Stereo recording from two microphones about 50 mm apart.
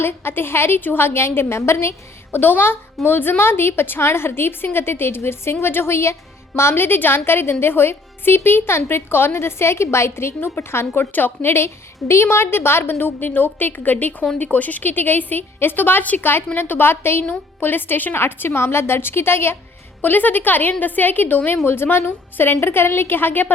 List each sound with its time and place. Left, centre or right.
0.0 s a woman's voice: left
2.3 s a woman's voice: left
11.1 s a woman's voice: left
11.5 s a woman's voice: left
20.0 s a woman's voice: left
21.6 s a woman's voice: left